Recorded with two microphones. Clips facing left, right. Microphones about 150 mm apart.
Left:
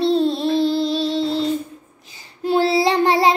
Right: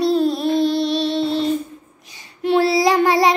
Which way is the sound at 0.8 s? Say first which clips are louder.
Right 1 dB; 75° right (ahead or behind).